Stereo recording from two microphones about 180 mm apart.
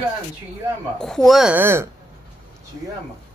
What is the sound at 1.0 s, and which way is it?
Speech, centre (ahead or behind).